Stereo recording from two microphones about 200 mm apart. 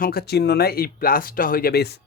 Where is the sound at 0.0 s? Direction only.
50° left (ahead or behind).